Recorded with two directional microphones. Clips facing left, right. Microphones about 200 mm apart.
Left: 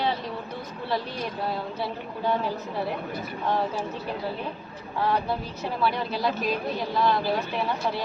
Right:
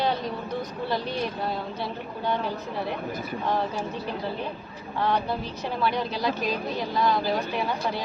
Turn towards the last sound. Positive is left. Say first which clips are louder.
# even
turn(degrees=5)  # may be behind; listen again after turning